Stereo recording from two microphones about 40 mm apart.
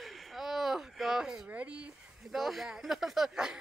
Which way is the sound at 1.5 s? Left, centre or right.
Right.